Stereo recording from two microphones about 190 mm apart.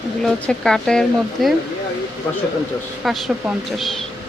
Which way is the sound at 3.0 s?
Centre (ahead or behind).